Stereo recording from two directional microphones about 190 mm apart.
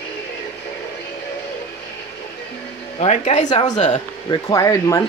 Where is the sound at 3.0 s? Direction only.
35° left (ahead or behind).